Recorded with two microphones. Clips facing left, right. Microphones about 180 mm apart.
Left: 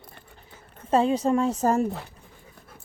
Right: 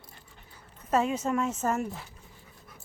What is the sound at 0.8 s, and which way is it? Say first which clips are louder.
A woman's voice: left 5 dB; 30° left (ahead or behind).